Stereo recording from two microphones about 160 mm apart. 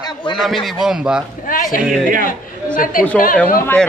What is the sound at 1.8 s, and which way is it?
Speech, centre (ahead or behind).